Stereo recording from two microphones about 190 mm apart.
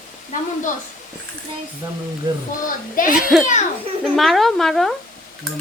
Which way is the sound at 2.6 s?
45° left (ahead or behind).